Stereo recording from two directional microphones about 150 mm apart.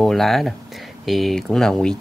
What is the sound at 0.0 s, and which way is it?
Speech, centre (ahead or behind).